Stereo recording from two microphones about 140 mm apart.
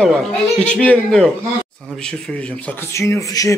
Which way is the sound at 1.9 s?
5° left (ahead or behind).